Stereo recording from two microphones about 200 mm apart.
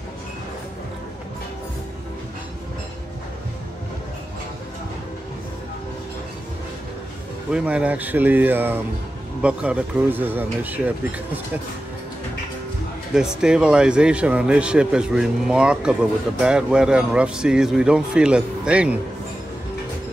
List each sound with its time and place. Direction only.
7.5 s a man's voice: 5° right (ahead or behind)
13.1 s speech: 5° right (ahead or behind)